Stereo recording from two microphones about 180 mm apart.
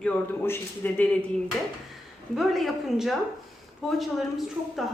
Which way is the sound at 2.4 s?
Centre (ahead or behind).